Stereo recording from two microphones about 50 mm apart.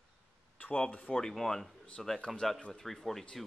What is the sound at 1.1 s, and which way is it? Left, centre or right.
A man's voice, centre.